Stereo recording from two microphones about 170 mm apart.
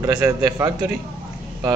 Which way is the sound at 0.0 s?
20° right (ahead or behind).